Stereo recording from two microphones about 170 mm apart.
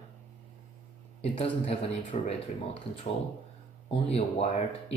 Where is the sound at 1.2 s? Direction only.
35° left (ahead or behind).